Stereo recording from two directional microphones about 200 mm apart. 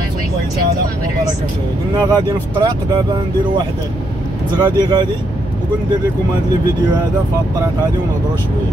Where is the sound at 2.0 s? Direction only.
20° right (ahead or behind).